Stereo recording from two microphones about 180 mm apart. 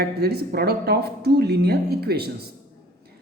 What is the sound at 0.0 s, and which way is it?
A man's voice, 60° right (ahead or behind).